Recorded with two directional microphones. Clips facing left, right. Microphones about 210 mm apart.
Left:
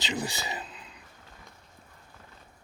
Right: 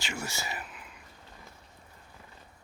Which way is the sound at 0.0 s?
20° left (ahead or behind).